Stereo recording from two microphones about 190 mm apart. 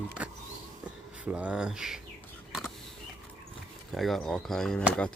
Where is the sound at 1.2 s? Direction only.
5° right (ahead or behind).